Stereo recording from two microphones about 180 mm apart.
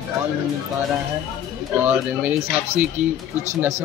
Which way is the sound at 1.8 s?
10° right (ahead or behind).